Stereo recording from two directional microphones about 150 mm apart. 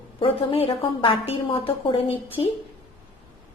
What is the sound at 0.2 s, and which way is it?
A woman's voice, 40° left (ahead or behind).